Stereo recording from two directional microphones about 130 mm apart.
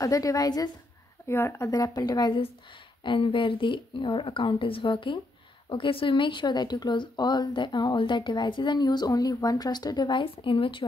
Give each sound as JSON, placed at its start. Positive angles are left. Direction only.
{"t": 0.0, "sound": "a woman's voice", "side_deg": 25}
{"t": 1.7, "sound": "speech", "side_deg": 30}